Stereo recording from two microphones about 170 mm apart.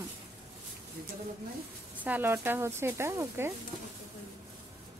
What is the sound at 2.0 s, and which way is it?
Speech, 10° right (ahead or behind).